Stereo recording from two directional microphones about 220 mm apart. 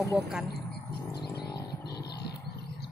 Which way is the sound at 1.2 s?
45° left (ahead or behind).